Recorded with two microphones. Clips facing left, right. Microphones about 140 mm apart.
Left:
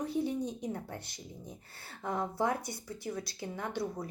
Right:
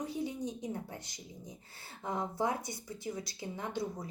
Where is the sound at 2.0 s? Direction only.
20° right (ahead or behind).